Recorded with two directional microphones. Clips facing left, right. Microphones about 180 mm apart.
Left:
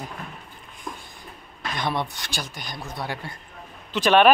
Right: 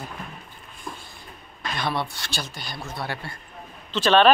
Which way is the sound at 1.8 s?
15° left (ahead or behind).